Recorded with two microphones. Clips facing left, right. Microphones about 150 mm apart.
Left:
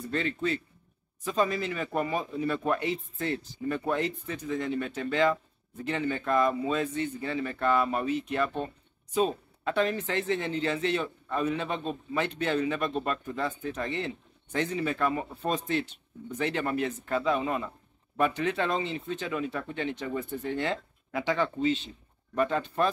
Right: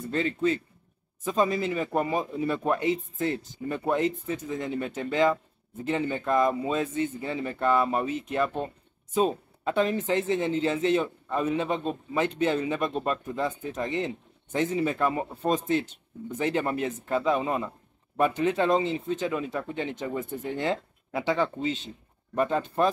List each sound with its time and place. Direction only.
0.1 s speech: 20° right (ahead or behind)
16.3 s speech: 20° right (ahead or behind)